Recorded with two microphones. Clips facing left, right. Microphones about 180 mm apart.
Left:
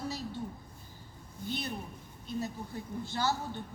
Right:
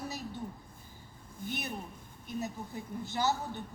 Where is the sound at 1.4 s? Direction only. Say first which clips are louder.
Left 1 dB; 15° right (ahead or behind).